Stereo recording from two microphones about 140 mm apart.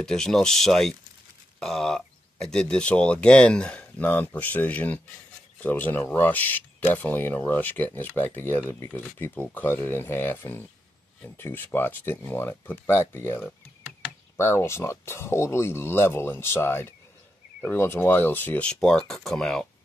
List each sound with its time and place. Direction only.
0.0 s speech: 5° left (ahead or behind)